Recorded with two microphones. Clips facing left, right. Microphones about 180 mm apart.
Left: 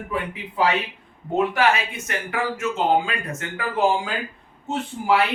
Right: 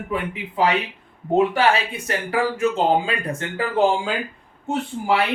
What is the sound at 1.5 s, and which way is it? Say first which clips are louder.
Speech: right 2 dB; 30° right (ahead or behind).